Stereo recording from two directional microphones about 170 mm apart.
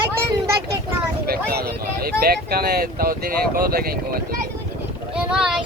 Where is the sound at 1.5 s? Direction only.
65° right (ahead or behind).